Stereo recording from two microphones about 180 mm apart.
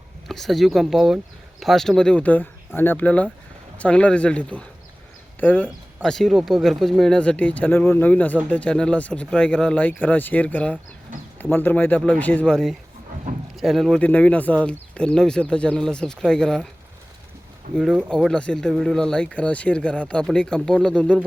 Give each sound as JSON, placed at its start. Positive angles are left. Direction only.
{"t": 0.3, "sound": "speech", "side_deg": 0}
{"t": 18.1, "sound": "speech", "side_deg": 5}